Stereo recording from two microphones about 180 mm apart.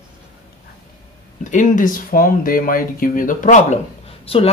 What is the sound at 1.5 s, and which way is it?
Speech, 45° left (ahead or behind).